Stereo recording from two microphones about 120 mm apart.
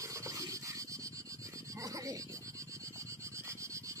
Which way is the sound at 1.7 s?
30° right (ahead or behind).